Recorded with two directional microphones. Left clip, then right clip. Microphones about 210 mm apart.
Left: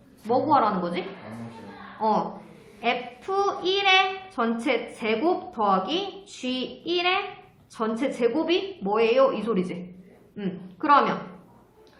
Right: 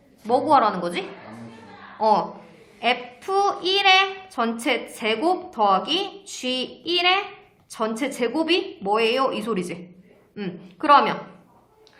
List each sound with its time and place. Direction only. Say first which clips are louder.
0.3 s a woman's voice: right 3 dB; 55° right (ahead or behind)